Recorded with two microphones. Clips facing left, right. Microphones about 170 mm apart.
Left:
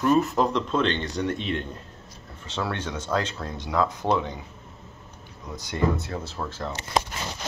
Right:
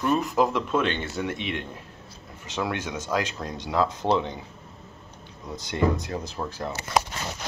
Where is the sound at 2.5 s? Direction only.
10° right (ahead or behind).